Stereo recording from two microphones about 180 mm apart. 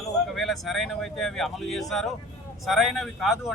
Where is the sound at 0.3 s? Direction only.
Centre (ahead or behind).